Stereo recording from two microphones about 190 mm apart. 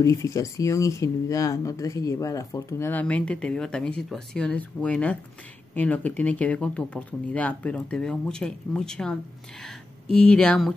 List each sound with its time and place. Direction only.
0.0 s speech: 15° left (ahead or behind)